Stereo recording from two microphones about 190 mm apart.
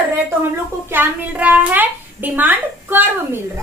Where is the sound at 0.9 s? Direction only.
10° right (ahead or behind).